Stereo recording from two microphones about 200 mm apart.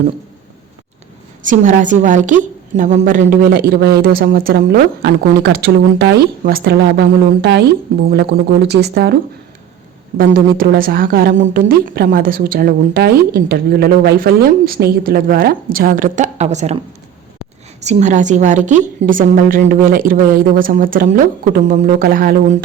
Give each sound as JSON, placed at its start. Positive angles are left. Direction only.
{"t": 1.5, "sound": "a woman's voice", "side_deg": -40}
{"t": 10.2, "sound": "a woman's voice", "side_deg": -45}